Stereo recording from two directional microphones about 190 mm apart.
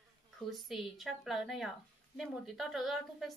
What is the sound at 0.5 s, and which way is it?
A woman's voice, centre (ahead or behind).